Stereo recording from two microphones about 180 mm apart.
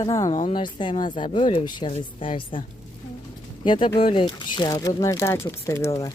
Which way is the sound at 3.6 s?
25° left (ahead or behind).